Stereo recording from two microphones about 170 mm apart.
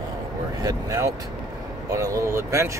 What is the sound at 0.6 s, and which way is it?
Speech, 20° right (ahead or behind).